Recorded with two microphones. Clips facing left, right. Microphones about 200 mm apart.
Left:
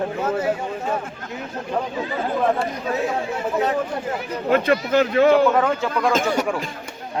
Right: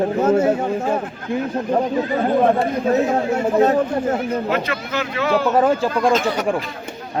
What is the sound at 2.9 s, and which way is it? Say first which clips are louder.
A man's voice: right 7 dB; 45° right (ahead or behind).